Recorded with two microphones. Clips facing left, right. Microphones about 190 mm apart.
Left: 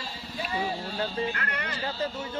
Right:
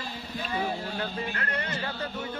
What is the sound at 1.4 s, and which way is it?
Speech, 30° right (ahead or behind).